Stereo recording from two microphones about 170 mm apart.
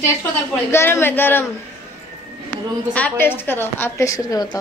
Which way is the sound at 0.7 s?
15° left (ahead or behind).